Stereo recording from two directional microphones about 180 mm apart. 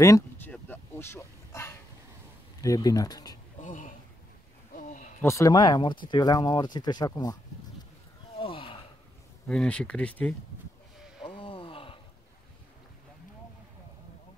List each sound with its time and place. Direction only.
0.0 s a sound: 15° left (ahead or behind)
2.6 s speech: 20° left (ahead or behind)
3.5 s a sound: 45° left (ahead or behind)
5.2 s speech: 15° left (ahead or behind)
8.4 s gasp: 30° left (ahead or behind)
9.5 s speech: 5° left (ahead or behind)
11.2 s gasp: 30° left (ahead or behind)